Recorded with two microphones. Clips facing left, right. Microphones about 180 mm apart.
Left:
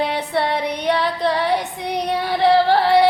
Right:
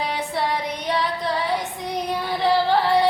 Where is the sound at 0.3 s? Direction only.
65° left (ahead or behind).